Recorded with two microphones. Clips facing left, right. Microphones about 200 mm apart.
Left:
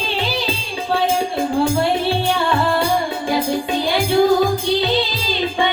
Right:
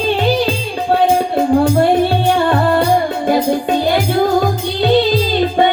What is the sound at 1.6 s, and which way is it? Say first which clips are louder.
Music: right 5 dB; 55° right (ahead or behind).